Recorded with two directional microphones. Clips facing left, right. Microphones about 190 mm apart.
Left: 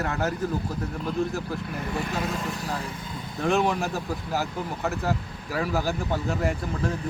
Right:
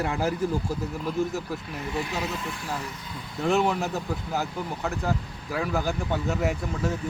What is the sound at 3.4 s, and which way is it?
Speech, centre (ahead or behind).